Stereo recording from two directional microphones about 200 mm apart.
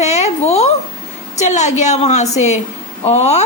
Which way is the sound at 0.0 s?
35° left (ahead or behind).